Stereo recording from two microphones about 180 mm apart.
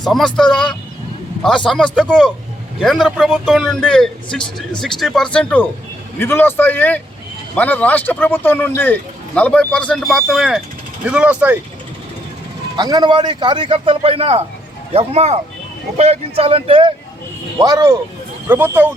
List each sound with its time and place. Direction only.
0.0 s speech: centre (ahead or behind)
12.7 s a man's voice: 25° right (ahead or behind)